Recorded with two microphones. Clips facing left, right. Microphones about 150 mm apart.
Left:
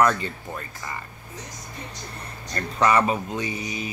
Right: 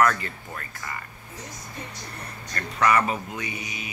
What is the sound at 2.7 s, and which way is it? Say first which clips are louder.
Speech: left 2 dB; 25° left (ahead or behind).